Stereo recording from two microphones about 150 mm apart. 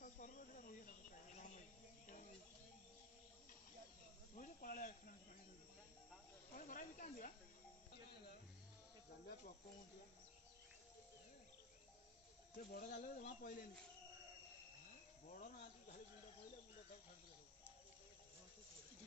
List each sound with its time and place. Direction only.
0.0 s cricket: 60° left (ahead or behind)
4.4 s snake: 65° left (ahead or behind)
6.5 s snake: 60° left (ahead or behind)
12.7 s speech: 65° left (ahead or behind)
15.2 s cricket: 55° left (ahead or behind)